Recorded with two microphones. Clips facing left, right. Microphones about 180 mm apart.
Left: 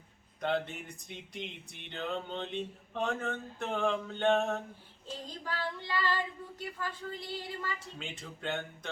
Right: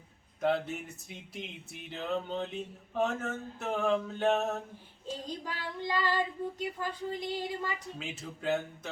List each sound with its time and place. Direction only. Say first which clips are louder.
0.4 s music: right 3 dB; 5° right (ahead or behind)
5.5 s female singing: even; 15° right (ahead or behind)
7.9 s music: right 3 dB; 5° right (ahead or behind)